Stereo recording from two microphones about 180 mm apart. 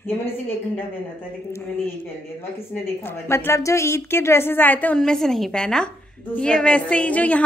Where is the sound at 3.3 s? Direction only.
15° left (ahead or behind).